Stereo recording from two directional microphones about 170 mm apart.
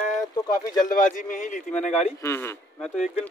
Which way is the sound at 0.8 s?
50° left (ahead or behind).